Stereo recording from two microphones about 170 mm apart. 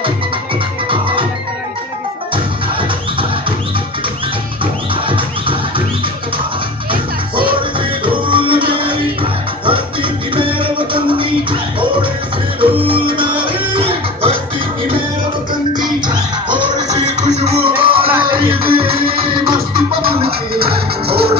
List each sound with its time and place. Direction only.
5.0 s music: 30° right (ahead or behind)
6.9 s music: 30° right (ahead or behind)
12.5 s music: 30° right (ahead or behind)
16.9 s music: 40° right (ahead or behind)
20.2 s music: 65° right (ahead or behind)